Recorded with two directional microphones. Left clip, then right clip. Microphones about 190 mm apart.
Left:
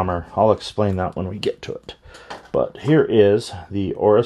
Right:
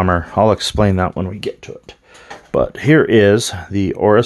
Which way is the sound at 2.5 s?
30° right (ahead or behind).